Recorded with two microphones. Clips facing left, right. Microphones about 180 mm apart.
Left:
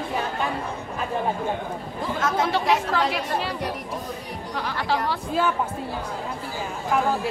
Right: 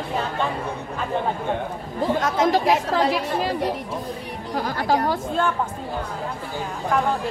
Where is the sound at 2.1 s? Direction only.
40° right (ahead or behind).